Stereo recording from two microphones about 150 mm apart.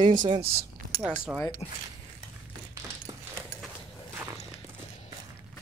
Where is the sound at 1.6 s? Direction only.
40° left (ahead or behind).